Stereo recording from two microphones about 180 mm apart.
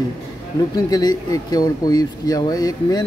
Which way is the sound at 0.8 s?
20° left (ahead or behind).